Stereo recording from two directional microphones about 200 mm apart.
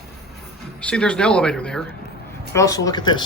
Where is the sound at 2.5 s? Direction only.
15° left (ahead or behind).